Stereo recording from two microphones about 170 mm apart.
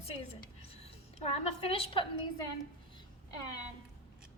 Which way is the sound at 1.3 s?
30° left (ahead or behind).